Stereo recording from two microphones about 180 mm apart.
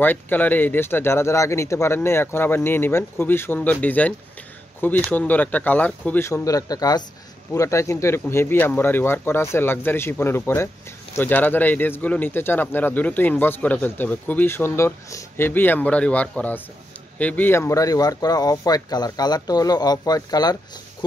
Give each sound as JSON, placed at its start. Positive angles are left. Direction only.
{"t": 0.0, "sound": "speech", "side_deg": 10}
{"t": 5.1, "sound": "speech", "side_deg": 10}